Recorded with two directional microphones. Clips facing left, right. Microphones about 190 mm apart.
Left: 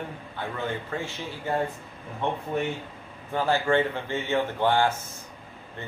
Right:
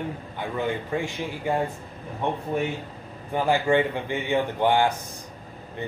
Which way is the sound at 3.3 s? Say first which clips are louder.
Right 2 dB; 15° right (ahead or behind).